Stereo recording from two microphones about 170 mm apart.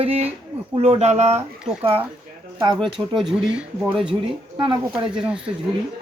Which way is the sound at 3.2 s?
Centre (ahead or behind).